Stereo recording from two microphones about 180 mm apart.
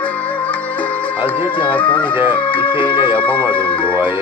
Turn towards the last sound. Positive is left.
turn(degrees=25)  # may be behind; listen again after turning